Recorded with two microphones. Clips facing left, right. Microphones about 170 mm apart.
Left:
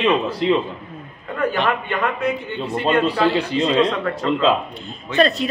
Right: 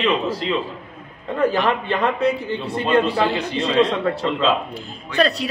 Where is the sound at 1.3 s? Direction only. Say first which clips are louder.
Right 2 dB; 30° right (ahead or behind).